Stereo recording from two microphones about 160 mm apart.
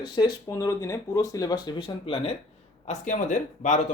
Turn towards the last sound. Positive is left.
turn(degrees=50)  # may be behind; listen again after turning